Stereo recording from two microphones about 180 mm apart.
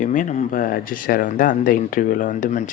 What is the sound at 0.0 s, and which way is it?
Speech, 45° left (ahead or behind).